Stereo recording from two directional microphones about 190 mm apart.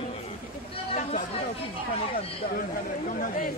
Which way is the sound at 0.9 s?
40° left (ahead or behind).